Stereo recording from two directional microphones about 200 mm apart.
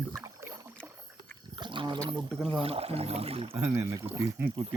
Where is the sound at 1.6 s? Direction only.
25° right (ahead or behind).